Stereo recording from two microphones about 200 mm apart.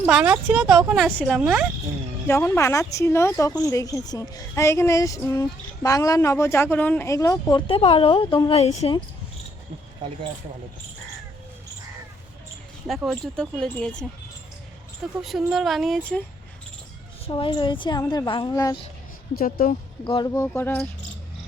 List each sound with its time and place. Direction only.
0.1 s speech: 5° right (ahead or behind)
2.2 s speech: 10° left (ahead or behind); by 9.0 s 30° left (ahead or behind)
13.0 s speech: centre (ahead or behind)
15.2 s speech: centre (ahead or behind)
17.2 s a woman's voice: 25° left (ahead or behind)
19.4 s a woman's voice: 45° left (ahead or behind)
20.1 s speech: 20° left (ahead or behind)